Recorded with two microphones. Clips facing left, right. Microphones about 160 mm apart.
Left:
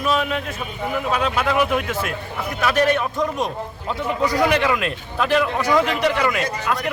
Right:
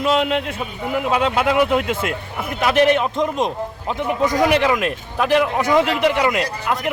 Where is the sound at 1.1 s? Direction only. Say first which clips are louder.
Right 3 dB; 20° right (ahead or behind).